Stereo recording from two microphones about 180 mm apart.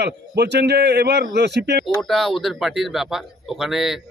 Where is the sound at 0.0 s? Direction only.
65° right (ahead or behind).